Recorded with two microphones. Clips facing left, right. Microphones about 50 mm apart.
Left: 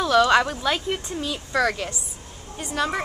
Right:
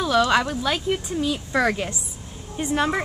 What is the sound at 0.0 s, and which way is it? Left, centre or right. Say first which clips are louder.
Speech: left 2 dB; centre.